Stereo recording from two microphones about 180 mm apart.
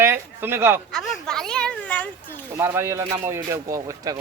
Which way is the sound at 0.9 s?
5° left (ahead or behind).